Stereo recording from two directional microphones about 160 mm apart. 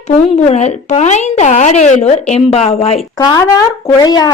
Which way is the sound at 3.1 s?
25° left (ahead or behind).